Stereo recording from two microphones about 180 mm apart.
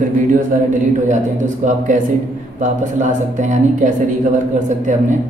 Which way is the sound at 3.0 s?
45° right (ahead or behind).